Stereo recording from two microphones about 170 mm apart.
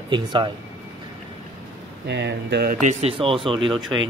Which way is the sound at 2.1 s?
85° right.